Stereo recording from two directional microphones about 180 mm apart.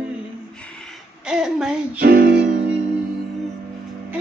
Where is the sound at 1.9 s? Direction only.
55° right (ahead or behind).